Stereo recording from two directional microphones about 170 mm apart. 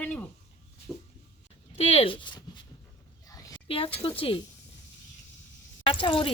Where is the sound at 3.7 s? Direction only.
35° left (ahead or behind).